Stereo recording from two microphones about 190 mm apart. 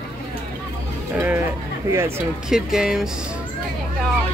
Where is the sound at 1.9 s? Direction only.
15° right (ahead or behind).